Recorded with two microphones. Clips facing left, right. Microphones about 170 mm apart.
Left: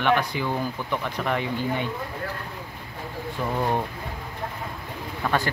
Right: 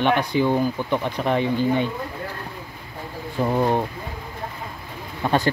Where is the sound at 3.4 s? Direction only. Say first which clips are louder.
Right 7 dB; 35° right (ahead or behind).